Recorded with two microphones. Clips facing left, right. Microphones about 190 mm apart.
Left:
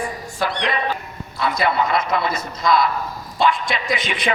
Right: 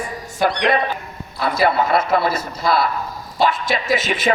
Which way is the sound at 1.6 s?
50° right (ahead or behind).